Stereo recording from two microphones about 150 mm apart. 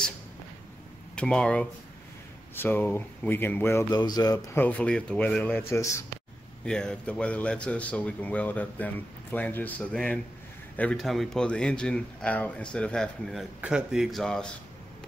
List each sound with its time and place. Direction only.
1.1 s a man's voice: 5° left (ahead or behind)
3.9 s speech: 25° left (ahead or behind)
4.6 s a man's voice: 10° left (ahead or behind)
6.6 s a man's voice: 5° left (ahead or behind)